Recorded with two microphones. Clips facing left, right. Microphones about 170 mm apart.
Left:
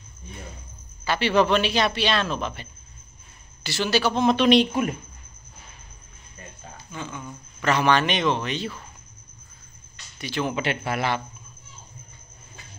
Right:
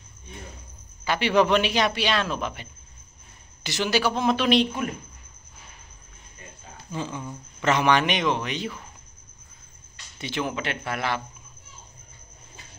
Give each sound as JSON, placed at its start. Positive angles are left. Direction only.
{"t": 1.0, "sound": "a man's voice", "side_deg": -15}
{"t": 6.9, "sound": "speech", "side_deg": -30}
{"t": 7.6, "sound": "a man's voice", "side_deg": -15}
{"t": 10.1, "sound": "speech", "side_deg": -25}
{"t": 10.5, "sound": "a man's voice", "side_deg": 5}